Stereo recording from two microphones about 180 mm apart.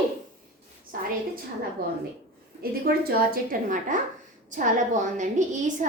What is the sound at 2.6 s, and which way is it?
A woman's voice, 55° right (ahead or behind).